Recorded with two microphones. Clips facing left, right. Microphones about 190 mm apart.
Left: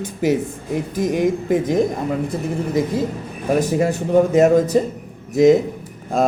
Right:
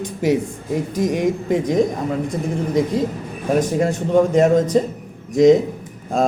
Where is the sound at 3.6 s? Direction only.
5° left (ahead or behind).